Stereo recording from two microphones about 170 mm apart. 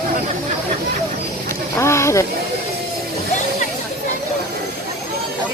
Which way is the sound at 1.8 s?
15° left (ahead or behind).